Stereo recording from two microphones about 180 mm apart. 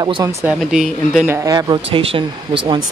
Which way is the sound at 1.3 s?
20° right (ahead or behind).